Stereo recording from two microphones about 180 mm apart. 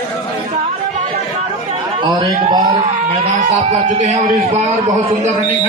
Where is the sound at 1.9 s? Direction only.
25° right (ahead or behind).